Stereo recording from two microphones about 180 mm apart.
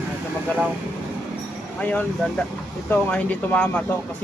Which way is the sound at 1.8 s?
10° left (ahead or behind).